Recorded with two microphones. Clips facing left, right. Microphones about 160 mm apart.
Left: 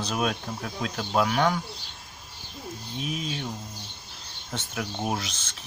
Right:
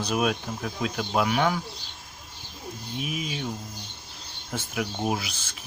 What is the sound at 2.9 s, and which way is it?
Speech, 5° right (ahead or behind).